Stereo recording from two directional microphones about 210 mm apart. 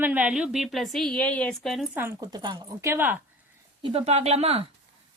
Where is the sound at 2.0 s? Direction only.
15° right (ahead or behind).